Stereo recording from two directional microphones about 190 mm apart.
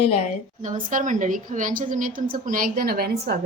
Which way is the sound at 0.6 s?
45° right (ahead or behind).